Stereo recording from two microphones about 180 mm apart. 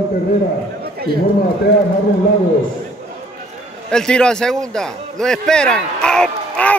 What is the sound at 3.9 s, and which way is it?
Speech, 5° left (ahead or behind).